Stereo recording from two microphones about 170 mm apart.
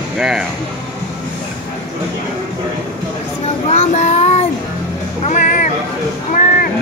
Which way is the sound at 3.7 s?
40° left (ahead or behind).